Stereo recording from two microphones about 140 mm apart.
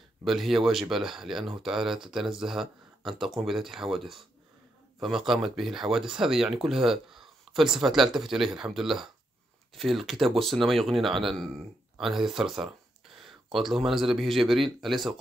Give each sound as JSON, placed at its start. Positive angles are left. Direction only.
{"t": 0.2, "sound": "speech", "side_deg": 0}